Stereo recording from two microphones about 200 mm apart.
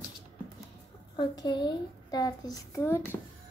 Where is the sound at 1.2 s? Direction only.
20° left (ahead or behind).